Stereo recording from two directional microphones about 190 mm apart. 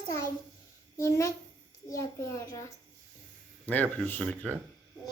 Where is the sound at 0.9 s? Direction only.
15° left (ahead or behind).